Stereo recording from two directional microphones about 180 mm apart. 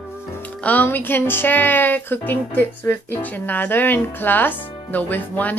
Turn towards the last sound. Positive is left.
turn(degrees=10)  # may be behind; listen again after turning